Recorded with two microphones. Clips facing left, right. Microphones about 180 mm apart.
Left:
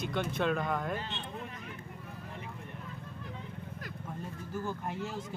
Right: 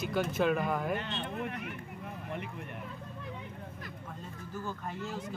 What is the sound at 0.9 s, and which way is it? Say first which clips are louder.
Speech: right 3 dB; 65° right (ahead or behind).